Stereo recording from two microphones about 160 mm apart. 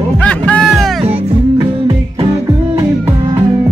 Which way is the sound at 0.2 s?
10° left (ahead or behind).